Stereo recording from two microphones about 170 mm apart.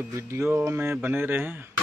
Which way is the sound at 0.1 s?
15° right (ahead or behind).